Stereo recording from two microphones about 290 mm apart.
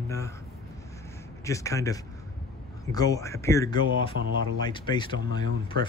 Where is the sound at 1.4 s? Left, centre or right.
Centre.